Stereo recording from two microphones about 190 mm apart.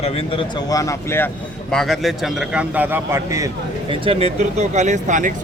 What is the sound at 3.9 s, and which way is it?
Speech, 30° right (ahead or behind).